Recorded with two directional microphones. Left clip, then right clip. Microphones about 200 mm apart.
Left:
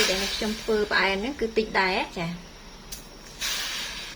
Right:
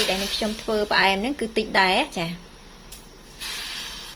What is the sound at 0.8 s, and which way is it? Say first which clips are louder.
A woman's voice: right 7 dB; 50° right (ahead or behind).